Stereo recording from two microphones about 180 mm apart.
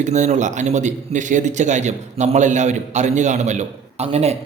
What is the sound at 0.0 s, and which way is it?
Speech, 40° right (ahead or behind).